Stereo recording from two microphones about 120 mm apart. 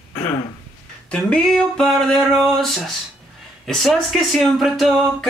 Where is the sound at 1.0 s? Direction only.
5° left (ahead or behind).